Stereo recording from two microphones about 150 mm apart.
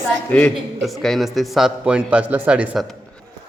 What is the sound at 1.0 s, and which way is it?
A man's voice, centre (ahead or behind).